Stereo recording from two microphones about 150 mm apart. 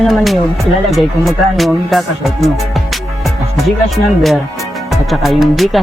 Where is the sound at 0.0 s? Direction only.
Centre (ahead or behind).